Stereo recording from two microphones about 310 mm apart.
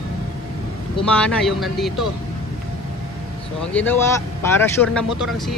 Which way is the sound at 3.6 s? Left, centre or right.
Centre.